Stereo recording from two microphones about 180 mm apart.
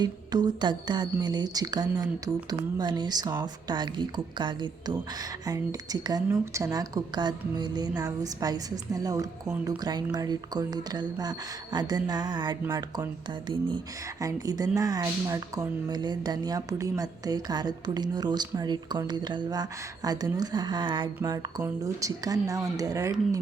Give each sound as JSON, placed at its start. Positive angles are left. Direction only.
{"t": 0.0, "sound": "a woman's voice", "side_deg": -25}